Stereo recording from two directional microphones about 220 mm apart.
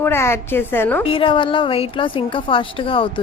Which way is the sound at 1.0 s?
25° left (ahead or behind).